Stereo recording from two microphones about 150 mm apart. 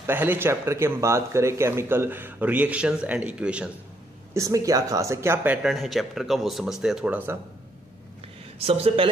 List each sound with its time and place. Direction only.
0.0 s a man's voice: 15° right (ahead or behind)
4.3 s speech: 20° right (ahead or behind)
5.6 s speech: centre (ahead or behind)
8.5 s a man's voice: 40° right (ahead or behind)